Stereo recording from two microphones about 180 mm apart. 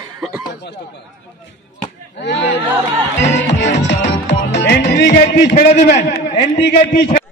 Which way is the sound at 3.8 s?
75° left (ahead or behind).